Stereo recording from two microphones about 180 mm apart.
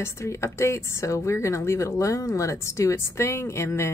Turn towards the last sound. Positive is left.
turn(degrees=15)  # may be behind; listen again after turning